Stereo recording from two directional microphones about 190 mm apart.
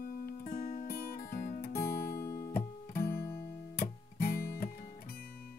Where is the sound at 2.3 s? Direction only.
20° left (ahead or behind).